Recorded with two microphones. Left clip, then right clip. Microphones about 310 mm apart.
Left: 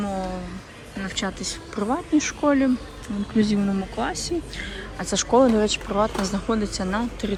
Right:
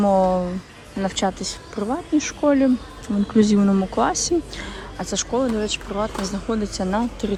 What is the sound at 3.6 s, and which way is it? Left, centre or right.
Speech, left.